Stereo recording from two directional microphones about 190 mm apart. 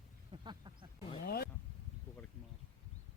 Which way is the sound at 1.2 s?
55° left (ahead or behind).